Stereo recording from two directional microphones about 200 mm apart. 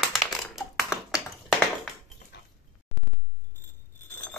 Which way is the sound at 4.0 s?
10° left (ahead or behind).